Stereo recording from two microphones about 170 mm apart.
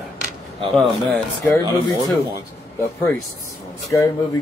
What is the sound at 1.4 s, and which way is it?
Speech, 20° left (ahead or behind).